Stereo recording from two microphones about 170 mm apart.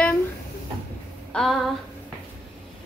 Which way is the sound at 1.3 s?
5° left (ahead or behind).